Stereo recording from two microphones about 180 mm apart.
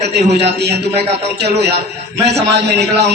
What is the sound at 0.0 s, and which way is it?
A man's voice, 65° right (ahead or behind).